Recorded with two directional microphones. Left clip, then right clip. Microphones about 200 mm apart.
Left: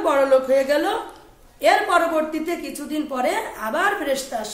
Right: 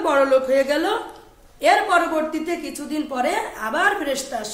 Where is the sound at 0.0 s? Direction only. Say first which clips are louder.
Even; 15° right (ahead or behind).